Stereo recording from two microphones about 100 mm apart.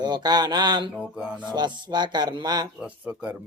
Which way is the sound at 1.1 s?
10° right (ahead or behind).